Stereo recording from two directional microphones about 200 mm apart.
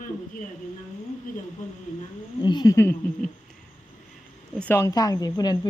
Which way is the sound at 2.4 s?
20° left (ahead or behind).